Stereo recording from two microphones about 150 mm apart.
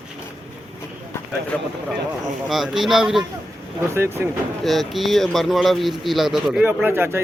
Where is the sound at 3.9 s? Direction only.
15° right (ahead or behind).